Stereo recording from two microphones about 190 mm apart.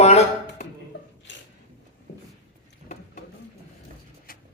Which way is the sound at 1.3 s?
70° left (ahead or behind).